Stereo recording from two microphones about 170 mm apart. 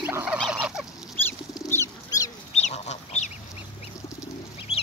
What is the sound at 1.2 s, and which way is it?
Bird, 15° left (ahead or behind).